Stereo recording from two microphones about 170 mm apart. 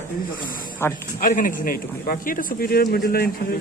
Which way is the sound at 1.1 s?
50° left (ahead or behind).